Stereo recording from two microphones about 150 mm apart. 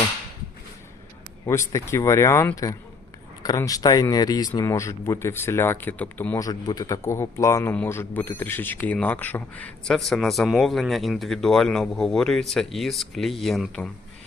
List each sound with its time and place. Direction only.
1.5 s speech: 20° left (ahead or behind)
6.4 s a man's voice: 25° left (ahead or behind); by 13.9 s centre (ahead or behind)